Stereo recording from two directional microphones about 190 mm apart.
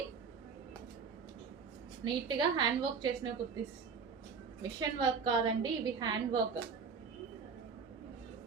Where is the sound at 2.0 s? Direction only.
25° right (ahead or behind).